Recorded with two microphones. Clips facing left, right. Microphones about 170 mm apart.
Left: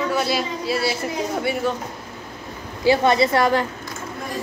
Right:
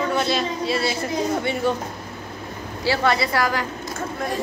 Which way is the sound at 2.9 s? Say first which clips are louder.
Left 5 dB; 20° left (ahead or behind).